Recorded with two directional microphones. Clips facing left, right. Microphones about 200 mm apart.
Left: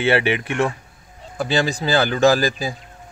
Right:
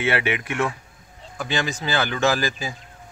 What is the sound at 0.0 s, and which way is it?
Speech, 30° left (ahead or behind).